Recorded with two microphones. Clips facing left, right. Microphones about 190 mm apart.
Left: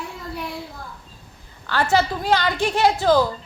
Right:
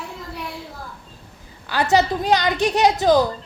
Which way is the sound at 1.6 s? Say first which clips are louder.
Right 2 dB; 15° right (ahead or behind).